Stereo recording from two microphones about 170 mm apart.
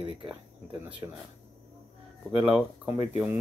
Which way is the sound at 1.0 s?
20° right (ahead or behind).